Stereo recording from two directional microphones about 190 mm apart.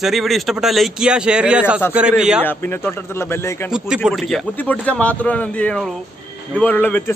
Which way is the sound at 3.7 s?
5° right (ahead or behind).